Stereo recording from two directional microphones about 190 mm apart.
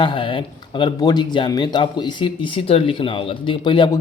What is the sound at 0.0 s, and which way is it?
Speech, 25° left (ahead or behind).